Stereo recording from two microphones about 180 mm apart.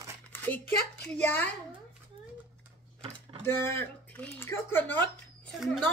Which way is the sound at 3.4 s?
15° left (ahead or behind).